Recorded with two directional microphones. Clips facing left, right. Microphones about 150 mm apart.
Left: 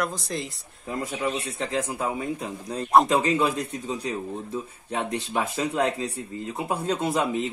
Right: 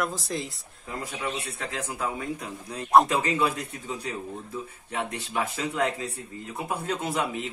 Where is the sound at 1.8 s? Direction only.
20° left (ahead or behind).